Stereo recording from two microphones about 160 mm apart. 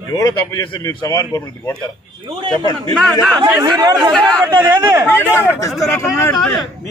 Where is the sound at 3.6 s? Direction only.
25° right (ahead or behind).